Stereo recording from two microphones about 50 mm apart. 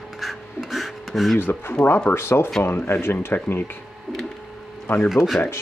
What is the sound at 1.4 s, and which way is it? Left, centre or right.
Speech, left.